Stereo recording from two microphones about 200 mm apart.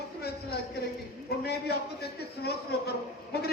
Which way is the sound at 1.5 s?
55° left (ahead or behind).